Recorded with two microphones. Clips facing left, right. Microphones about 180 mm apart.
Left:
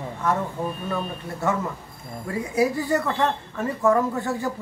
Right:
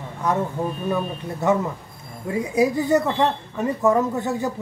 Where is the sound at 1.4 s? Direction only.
20° right (ahead or behind).